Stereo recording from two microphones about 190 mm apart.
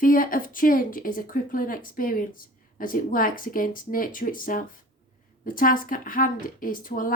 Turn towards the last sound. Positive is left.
turn(degrees=45)  # may be behind; listen again after turning